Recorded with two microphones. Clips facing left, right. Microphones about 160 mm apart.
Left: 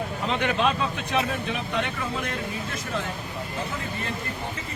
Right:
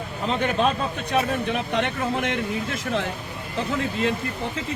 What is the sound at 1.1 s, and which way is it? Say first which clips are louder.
Speech: right 5 dB; 50° right (ahead or behind).